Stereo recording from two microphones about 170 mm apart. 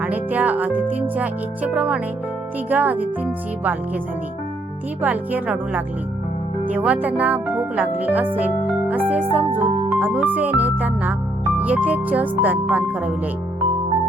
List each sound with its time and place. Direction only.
0.0 s speech: 10° right (ahead or behind)
5.0 s speech: 10° right (ahead or behind)